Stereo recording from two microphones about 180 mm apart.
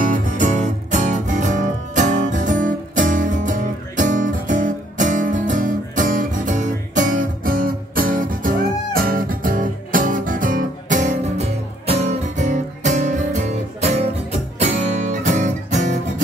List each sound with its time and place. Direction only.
0.0 s music: 45° right (ahead or behind)